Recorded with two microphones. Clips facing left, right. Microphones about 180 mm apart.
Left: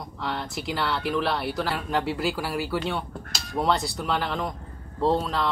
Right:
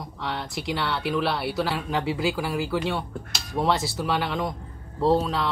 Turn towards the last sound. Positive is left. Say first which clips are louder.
# right 2 dB
turn(degrees=0)  # may be behind; listen again after turning